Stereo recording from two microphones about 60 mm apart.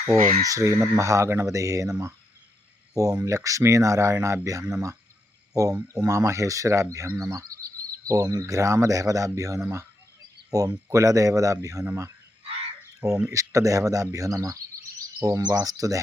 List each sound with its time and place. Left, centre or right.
0.1 s speech: right
0.7 s speech: right
1.5 s speech: right
13.3 s speech: right